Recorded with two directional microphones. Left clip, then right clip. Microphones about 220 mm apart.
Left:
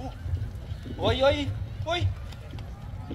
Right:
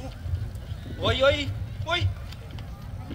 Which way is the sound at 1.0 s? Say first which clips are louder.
Right 1 dB; centre (ahead or behind).